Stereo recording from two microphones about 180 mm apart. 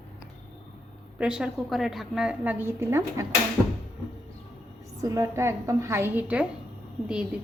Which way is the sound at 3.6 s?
Centre (ahead or behind).